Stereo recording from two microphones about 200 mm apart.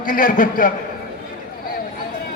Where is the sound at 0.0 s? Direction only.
45° left (ahead or behind).